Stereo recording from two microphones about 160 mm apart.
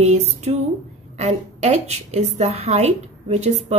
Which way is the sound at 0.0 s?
40° right (ahead or behind).